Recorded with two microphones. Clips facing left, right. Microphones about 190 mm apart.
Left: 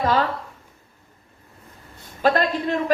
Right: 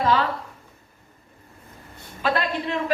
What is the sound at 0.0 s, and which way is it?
Speech, 45° left (ahead or behind).